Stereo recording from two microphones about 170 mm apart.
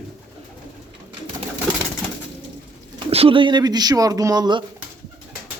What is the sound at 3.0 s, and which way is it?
Speech, 35° right (ahead or behind).